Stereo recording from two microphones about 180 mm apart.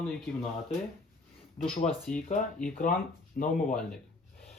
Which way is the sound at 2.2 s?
45° left (ahead or behind).